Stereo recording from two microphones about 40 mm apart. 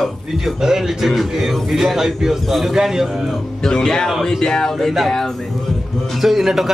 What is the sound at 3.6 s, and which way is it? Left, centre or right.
Speech, centre.